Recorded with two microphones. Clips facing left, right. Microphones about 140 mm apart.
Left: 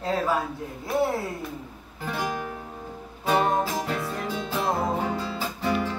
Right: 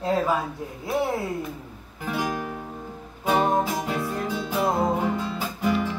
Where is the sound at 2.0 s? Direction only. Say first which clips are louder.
Right 2 dB; 10° right (ahead or behind).